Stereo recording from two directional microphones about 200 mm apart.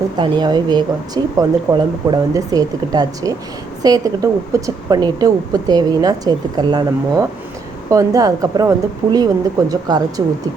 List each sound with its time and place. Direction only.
0.2 s a woman's voice: 20° right (ahead or behind)